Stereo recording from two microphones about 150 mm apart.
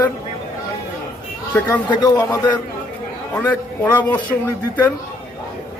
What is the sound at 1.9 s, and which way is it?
Speech, 25° left (ahead or behind).